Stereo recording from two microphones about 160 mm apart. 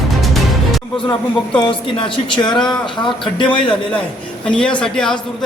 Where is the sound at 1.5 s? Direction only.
30° left (ahead or behind).